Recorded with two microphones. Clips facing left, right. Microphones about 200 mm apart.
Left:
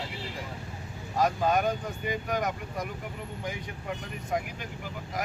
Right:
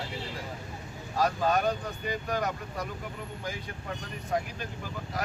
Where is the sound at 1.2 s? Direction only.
15° left (ahead or behind).